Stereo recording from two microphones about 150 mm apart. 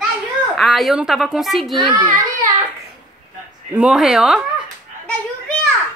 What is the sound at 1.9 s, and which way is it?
Speech, 30° right (ahead or behind).